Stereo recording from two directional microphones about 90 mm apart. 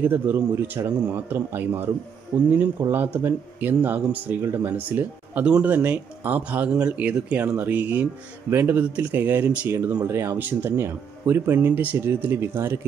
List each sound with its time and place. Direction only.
0.0 s speech: 25° right (ahead or behind)
10.0 s speech: 30° right (ahead or behind)